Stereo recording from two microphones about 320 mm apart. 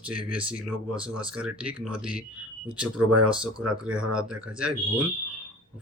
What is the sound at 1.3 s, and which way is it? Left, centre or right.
Speech, centre.